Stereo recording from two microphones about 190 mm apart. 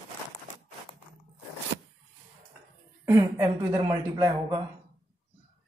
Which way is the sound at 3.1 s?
10° right (ahead or behind).